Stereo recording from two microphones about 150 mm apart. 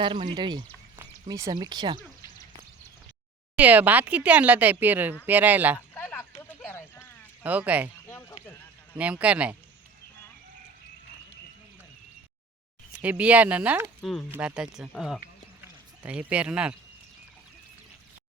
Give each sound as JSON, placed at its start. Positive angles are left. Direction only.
{"t": 0.0, "sound": "speech", "side_deg": -30}
{"t": 3.5, "sound": "speech", "side_deg": -10}
{"t": 5.9, "sound": "a sound", "side_deg": 10}
{"t": 7.4, "sound": "speech", "side_deg": -10}
{"t": 8.0, "sound": "a sound", "side_deg": 15}
{"t": 9.0, "sound": "speech", "side_deg": -10}
{"t": 13.0, "sound": "speech", "side_deg": -10}
{"t": 14.0, "sound": "speech", "side_deg": 0}
{"t": 14.3, "sound": "speech", "side_deg": -10}
{"t": 15.6, "sound": "a sound", "side_deg": -10}